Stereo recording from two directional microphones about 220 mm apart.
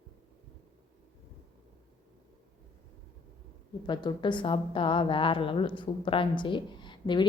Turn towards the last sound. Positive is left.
turn(degrees=20)  # may be behind; listen again after turning